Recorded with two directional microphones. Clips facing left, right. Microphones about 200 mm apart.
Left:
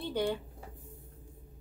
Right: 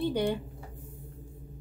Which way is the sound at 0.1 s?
15° right (ahead or behind).